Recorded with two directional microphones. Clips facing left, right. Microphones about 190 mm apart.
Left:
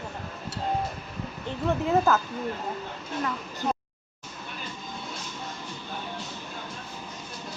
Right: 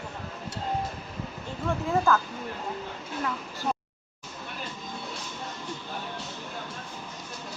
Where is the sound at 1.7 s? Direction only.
20° left (ahead or behind).